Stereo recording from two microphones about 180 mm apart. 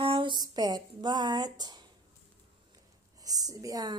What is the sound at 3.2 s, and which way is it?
Speech, 20° right (ahead or behind).